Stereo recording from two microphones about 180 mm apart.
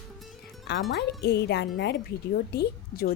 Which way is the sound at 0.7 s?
70° left (ahead or behind).